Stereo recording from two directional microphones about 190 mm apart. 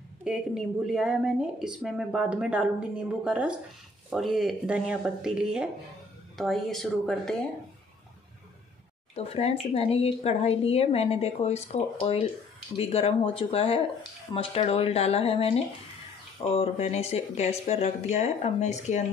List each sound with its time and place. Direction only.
0.2 s a woman's voice: 5° right (ahead or behind)
9.1 s speech: 35° left (ahead or behind)